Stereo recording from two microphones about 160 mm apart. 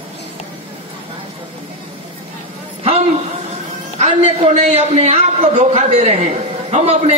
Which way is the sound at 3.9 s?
45° right (ahead or behind).